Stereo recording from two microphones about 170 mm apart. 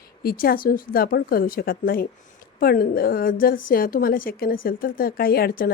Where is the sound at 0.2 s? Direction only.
65° left (ahead or behind).